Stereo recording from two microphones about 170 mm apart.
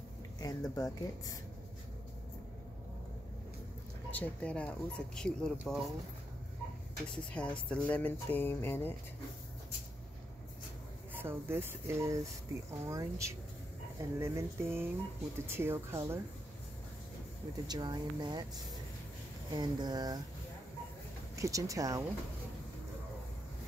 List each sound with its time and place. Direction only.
0.4 s speech: 20° left (ahead or behind)
4.1 s speech: 10° left (ahead or behind)
7.1 s speech: 5° left (ahead or behind)
11.1 s speech: 15° right (ahead or behind)
17.6 s speech: 25° right (ahead or behind)
21.4 s speech: 20° right (ahead or behind)